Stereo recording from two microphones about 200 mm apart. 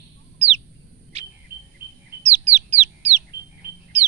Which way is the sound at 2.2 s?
35° right (ahead or behind).